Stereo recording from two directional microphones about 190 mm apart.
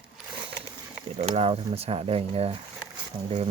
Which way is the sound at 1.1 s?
30° right (ahead or behind).